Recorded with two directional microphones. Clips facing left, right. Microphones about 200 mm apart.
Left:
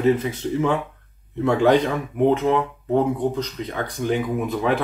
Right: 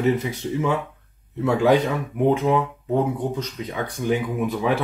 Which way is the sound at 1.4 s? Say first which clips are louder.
Left 1 dB; 5° right (ahead or behind).